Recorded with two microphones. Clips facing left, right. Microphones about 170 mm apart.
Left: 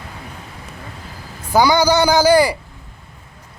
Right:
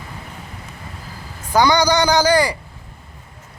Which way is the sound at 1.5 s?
10° left (ahead or behind).